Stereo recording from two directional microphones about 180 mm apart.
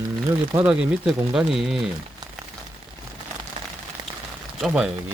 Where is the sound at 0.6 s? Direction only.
5° right (ahead or behind).